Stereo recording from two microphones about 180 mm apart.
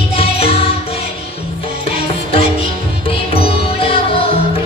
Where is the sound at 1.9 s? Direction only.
30° left (ahead or behind).